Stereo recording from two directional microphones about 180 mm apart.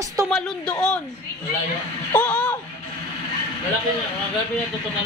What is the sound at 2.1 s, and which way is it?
Music, 10° left (ahead or behind).